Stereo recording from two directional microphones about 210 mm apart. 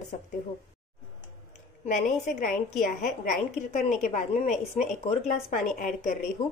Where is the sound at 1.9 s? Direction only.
35° left (ahead or behind).